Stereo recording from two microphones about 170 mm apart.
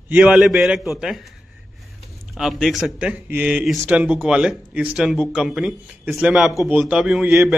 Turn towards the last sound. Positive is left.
turn(degrees=-5)  # may be behind; listen again after turning